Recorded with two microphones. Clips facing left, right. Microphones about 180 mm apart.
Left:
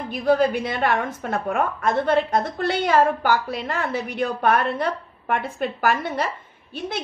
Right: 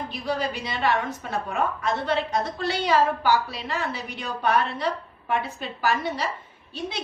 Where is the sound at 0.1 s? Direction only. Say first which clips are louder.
Left 11 dB; 50° left (ahead or behind).